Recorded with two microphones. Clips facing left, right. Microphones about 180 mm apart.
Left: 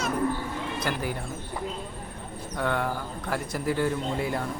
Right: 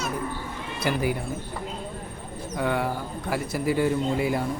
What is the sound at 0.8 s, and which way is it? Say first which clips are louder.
Speech: right 7 dB; 10° right (ahead or behind).